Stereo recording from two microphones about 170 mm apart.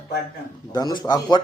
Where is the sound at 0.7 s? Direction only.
25° left (ahead or behind).